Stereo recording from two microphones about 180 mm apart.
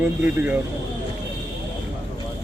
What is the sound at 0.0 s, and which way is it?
Speech, 10° right (ahead or behind).